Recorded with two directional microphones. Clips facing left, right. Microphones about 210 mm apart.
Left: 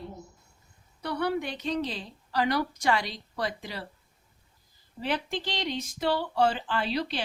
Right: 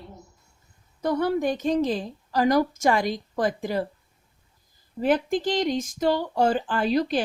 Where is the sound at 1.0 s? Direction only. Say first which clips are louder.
Right 6 dB; 45° right (ahead or behind).